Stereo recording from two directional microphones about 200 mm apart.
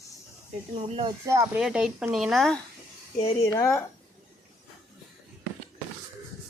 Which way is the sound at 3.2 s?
20° left (ahead or behind).